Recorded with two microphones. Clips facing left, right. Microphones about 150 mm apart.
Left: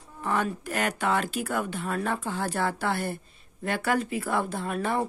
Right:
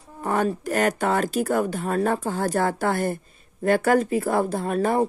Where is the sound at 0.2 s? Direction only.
40° right (ahead or behind).